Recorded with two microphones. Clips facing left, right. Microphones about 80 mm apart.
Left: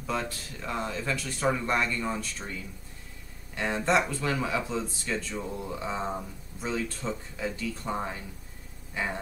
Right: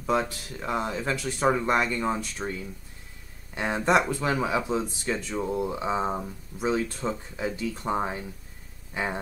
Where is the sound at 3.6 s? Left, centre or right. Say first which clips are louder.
Right 3 dB; centre.